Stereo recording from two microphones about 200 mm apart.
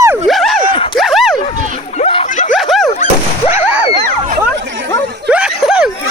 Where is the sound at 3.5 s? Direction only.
10° right (ahead or behind).